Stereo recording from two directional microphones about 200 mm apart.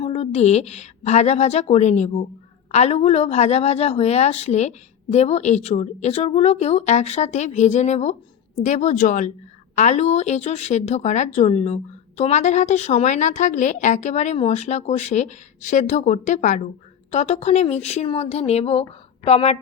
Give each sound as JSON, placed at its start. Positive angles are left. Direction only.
{"t": 0.0, "sound": "a woman's voice", "side_deg": 30}